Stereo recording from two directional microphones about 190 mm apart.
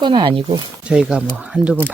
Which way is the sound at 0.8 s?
5° right (ahead or behind).